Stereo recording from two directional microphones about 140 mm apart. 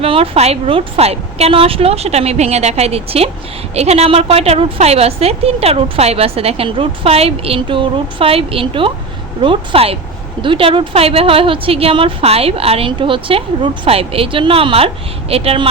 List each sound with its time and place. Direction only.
0.0 s a woman's voice: 45° right (ahead or behind)